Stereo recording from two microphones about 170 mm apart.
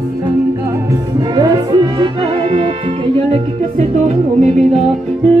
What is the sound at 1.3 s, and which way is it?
Music, 25° right (ahead or behind).